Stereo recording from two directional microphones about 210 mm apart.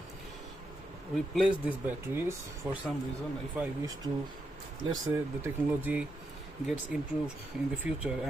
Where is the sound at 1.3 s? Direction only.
5° right (ahead or behind).